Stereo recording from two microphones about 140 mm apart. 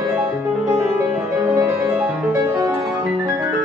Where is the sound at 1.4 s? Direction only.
20° right (ahead or behind).